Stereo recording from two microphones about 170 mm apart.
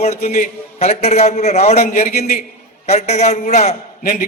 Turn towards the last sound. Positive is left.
turn(degrees=55)  # may be behind; listen again after turning